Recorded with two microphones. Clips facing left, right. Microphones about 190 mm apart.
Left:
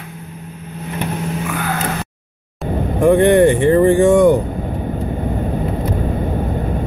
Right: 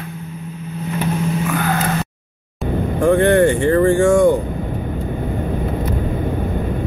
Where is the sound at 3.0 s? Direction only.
15° left (ahead or behind).